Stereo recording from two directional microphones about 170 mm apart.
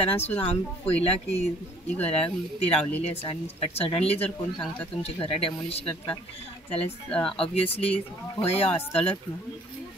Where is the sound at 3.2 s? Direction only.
30° left (ahead or behind).